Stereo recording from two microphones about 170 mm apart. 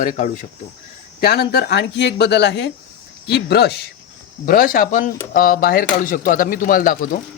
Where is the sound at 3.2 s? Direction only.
75° left (ahead or behind).